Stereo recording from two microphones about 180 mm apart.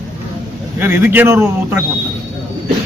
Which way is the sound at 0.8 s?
10° right (ahead or behind).